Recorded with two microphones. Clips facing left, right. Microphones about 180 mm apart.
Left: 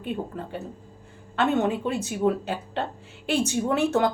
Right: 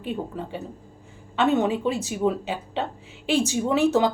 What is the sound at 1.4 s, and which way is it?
A woman's voice, 5° right (ahead or behind).